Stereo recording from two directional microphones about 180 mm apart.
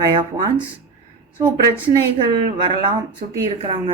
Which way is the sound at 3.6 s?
30° right (ahead or behind).